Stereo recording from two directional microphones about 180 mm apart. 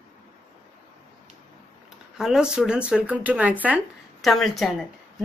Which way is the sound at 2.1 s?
5° right (ahead or behind).